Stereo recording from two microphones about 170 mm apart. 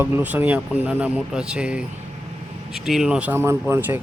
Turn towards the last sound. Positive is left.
turn(degrees=-10)  # may be behind; listen again after turning